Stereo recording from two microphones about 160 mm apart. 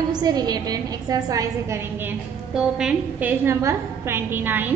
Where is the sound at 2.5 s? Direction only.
5° right (ahead or behind).